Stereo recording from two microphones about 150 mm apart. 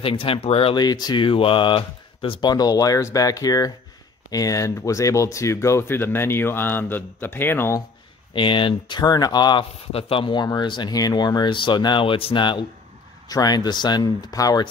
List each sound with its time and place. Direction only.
0.0 s speech: 35° left (ahead or behind)
0.7 s speech: 25° left (ahead or behind)
8.3 s speech: 35° left (ahead or behind)